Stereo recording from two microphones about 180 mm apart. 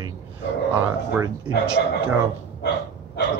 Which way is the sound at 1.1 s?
15° right (ahead or behind).